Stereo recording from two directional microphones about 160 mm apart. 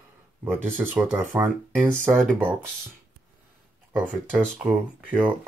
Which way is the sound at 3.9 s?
10° right (ahead or behind).